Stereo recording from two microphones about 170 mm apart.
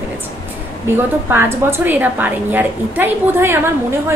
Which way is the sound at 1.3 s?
15° right (ahead or behind).